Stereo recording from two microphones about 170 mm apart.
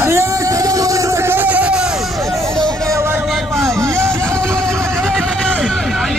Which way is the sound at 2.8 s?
15° right (ahead or behind).